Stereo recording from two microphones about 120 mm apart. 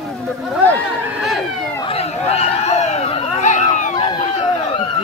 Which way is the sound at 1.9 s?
60° left (ahead or behind).